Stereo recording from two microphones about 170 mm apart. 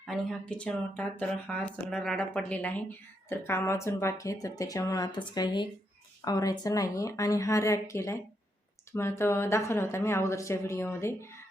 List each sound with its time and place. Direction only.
0.0 s speech: 5° left (ahead or behind)